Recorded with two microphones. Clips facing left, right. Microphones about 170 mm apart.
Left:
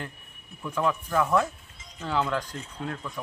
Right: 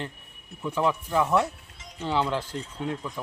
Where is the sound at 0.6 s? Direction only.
10° right (ahead or behind).